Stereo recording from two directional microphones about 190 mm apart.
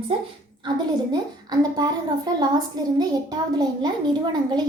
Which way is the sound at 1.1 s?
20° right (ahead or behind).